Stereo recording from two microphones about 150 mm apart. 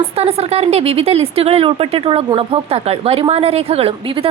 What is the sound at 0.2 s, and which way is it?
A woman's voice, 40° right (ahead or behind).